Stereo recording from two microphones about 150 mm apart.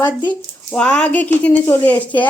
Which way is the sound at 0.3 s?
5° left (ahead or behind).